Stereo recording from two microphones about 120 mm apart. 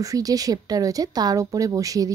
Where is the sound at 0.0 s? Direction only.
30° right (ahead or behind).